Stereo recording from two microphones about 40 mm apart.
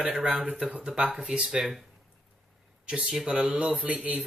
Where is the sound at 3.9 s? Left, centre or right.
Right.